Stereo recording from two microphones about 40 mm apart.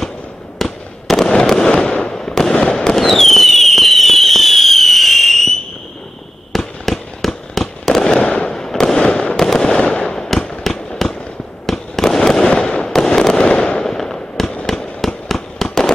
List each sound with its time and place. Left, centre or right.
0.6 s fireworks: centre
1.2 s fireworks: centre
3.0 s fireworks: centre
6.5 s fireworks: centre
8.0 s fireworks: left
8.5 s fireworks: centre